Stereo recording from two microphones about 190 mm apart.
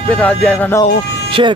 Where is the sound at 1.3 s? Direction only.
25° right (ahead or behind).